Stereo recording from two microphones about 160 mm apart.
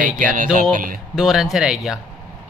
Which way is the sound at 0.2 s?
55° right (ahead or behind).